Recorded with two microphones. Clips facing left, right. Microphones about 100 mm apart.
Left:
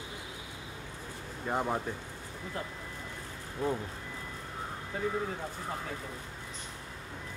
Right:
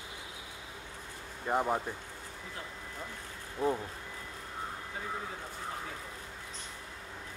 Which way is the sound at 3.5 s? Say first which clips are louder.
Right 1 dB; 5° right (ahead or behind).